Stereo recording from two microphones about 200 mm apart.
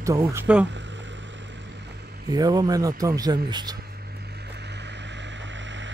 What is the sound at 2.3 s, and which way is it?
Speech, 20° right (ahead or behind).